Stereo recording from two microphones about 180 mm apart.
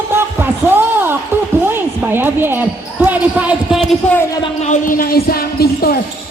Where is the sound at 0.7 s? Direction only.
10° right (ahead or behind).